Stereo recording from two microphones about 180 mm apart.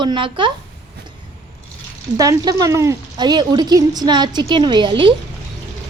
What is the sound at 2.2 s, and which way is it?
Speech, 20° right (ahead or behind).